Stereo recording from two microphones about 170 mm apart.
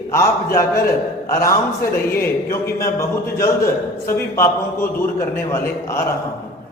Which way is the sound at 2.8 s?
15° left (ahead or behind).